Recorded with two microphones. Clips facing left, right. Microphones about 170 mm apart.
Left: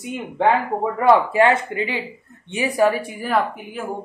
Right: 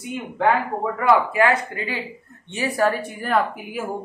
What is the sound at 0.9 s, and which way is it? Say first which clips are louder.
Speech: left 3 dB; 25° left (ahead or behind).